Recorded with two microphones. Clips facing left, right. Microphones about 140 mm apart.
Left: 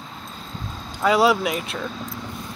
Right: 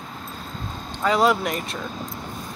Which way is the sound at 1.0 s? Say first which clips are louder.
Left 2 dB; 5° left (ahead or behind).